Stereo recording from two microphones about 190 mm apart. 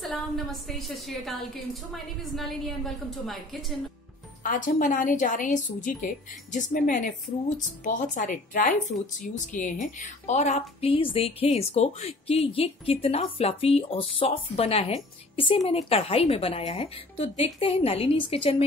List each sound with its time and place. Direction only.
0.0 s a woman's voice: centre (ahead or behind)
4.4 s a woman's voice: 45° left (ahead or behind); by 18.6 s 30° left (ahead or behind)